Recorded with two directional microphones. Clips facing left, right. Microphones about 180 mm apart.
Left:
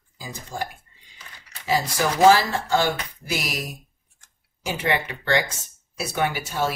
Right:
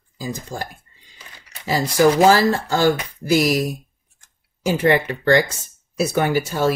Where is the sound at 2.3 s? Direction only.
40° right (ahead or behind).